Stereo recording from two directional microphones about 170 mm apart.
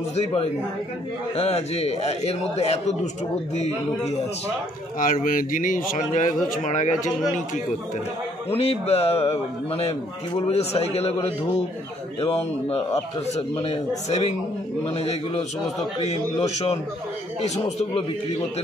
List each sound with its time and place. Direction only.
0.1 s a man's voice: 35° left (ahead or behind)
4.9 s speech: 55° left (ahead or behind)
8.5 s a man's voice: 35° left (ahead or behind)